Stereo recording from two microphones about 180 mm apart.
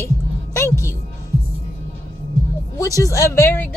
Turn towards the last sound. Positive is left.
turn(degrees=15)  # may be behind; listen again after turning